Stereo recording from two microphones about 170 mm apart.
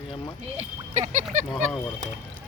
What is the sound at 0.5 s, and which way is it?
Speech, 40° right (ahead or behind).